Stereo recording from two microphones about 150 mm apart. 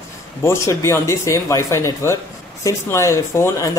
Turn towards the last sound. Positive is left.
turn(degrees=20)  # may be behind; listen again after turning